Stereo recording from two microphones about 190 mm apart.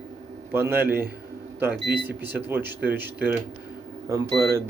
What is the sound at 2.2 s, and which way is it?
Speech, 10° right (ahead or behind).